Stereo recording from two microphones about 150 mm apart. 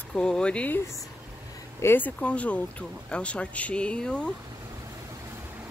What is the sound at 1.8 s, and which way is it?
Speech, 15° left (ahead or behind).